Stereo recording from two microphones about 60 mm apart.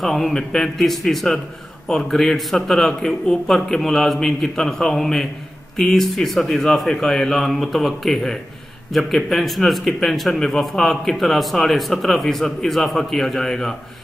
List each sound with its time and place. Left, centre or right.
0.0 s a man's voice: centre